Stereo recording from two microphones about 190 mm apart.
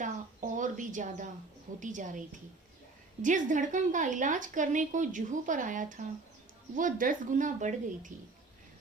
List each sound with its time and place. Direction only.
0.5 s a woman's voice: 40° right (ahead or behind)